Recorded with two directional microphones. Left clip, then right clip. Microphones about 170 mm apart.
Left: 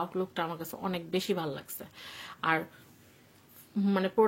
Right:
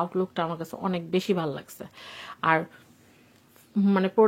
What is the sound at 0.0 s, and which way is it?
Speech, 30° right (ahead or behind).